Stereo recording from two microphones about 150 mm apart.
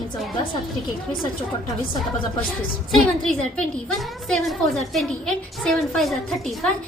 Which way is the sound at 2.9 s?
Centre (ahead or behind).